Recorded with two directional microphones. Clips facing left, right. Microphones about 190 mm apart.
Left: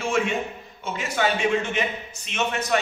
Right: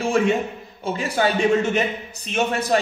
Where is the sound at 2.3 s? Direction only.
35° right (ahead or behind).